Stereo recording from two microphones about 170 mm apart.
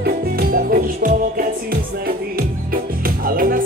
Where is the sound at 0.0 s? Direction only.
60° right (ahead or behind).